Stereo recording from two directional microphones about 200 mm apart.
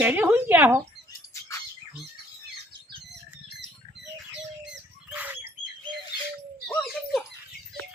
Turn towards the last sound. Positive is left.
turn(degrees=0)  # may be behind; listen again after turning